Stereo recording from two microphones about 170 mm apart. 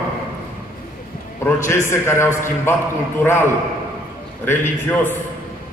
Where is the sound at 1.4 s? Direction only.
15° left (ahead or behind).